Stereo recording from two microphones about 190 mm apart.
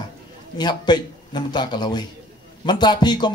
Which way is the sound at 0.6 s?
20° left (ahead or behind).